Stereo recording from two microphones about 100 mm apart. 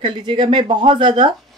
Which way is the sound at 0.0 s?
55° right (ahead or behind).